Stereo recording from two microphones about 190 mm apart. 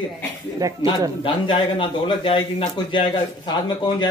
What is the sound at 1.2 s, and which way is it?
Speech, 25° left (ahead or behind).